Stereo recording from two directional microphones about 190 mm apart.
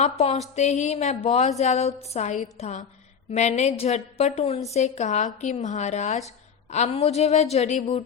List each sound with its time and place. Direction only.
0.0 s a woman's voice: 35° left (ahead or behind)